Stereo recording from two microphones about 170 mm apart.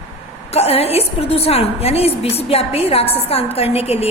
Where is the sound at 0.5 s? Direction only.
35° left (ahead or behind).